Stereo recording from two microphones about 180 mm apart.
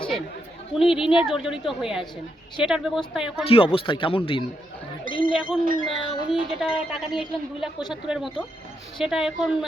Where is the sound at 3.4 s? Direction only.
30° left (ahead or behind).